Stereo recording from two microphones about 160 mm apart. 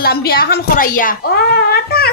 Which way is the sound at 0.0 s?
70° left (ahead or behind).